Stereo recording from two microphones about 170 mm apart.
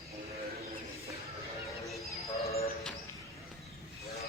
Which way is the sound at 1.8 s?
Centre (ahead or behind).